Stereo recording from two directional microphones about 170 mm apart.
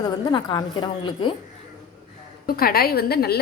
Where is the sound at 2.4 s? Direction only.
60° left (ahead or behind).